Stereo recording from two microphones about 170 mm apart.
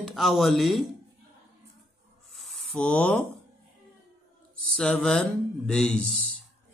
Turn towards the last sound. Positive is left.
turn(degrees=5)  # may be behind; listen again after turning